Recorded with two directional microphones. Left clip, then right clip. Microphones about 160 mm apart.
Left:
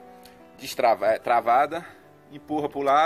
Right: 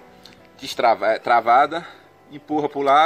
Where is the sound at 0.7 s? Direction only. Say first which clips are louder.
Right 3 dB; 25° left (ahead or behind).